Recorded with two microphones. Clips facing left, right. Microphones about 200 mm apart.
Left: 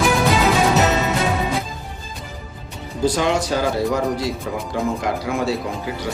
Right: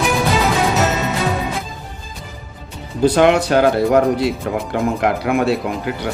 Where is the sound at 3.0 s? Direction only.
65° right (ahead or behind).